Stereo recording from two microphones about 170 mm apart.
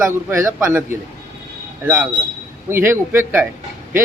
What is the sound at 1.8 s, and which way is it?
Speech, 10° right (ahead or behind).